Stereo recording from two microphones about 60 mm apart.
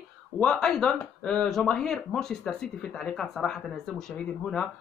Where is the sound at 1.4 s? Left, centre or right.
Centre.